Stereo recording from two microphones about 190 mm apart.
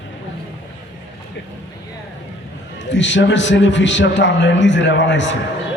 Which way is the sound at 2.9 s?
75° left (ahead or behind).